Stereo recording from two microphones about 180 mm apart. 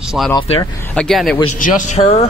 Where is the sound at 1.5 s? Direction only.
45° left (ahead or behind).